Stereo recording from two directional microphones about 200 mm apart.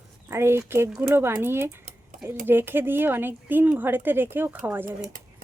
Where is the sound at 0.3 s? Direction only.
15° right (ahead or behind).